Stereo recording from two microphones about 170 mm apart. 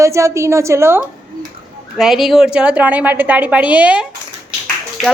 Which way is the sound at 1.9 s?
Centre (ahead or behind).